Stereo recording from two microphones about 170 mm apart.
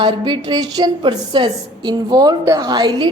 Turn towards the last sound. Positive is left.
turn(degrees=-25)  # may be behind; listen again after turning